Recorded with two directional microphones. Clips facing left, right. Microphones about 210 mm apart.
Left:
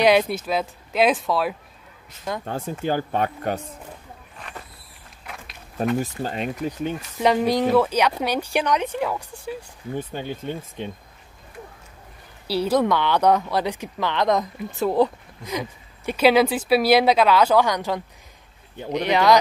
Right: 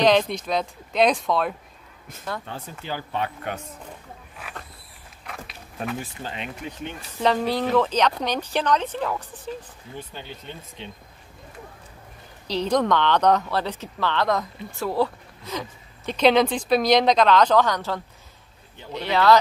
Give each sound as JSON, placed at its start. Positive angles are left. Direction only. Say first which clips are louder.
{"t": 0.0, "sound": "speech", "louder": "left 1 dB", "side_deg": 10}
{"t": 2.4, "sound": "speech", "louder": "left 9 dB", "side_deg": 45}
{"t": 4.4, "sound": "a sound", "louder": "left 1 dB", "side_deg": -5}
{"t": 5.9, "sound": "speech", "louder": "left 7 dB", "side_deg": 40}
{"t": 7.2, "sound": "speech", "louder": "left 3 dB", "side_deg": 15}
{"t": 9.9, "sound": "speech", "louder": "left 8 dB", "side_deg": 50}
{"t": 12.4, "sound": "speech", "louder": "left 2 dB", "side_deg": 10}